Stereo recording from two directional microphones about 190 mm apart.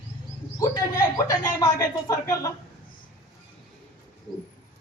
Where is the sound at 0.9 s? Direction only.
20° left (ahead or behind).